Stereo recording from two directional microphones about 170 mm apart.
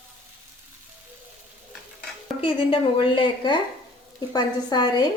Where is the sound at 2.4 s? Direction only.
30° left (ahead or behind).